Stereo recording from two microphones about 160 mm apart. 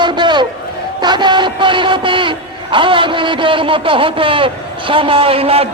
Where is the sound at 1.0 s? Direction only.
30° right (ahead or behind).